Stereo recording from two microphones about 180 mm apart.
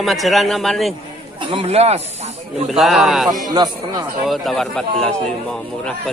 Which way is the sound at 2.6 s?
Centre (ahead or behind).